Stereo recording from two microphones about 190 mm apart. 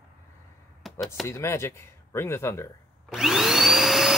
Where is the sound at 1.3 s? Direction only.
15° left (ahead or behind).